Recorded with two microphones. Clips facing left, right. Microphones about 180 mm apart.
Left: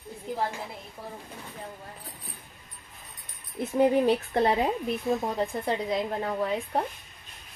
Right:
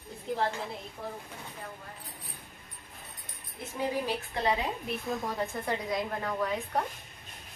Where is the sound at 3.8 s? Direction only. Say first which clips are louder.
Left 10 dB; 55° left (ahead or behind).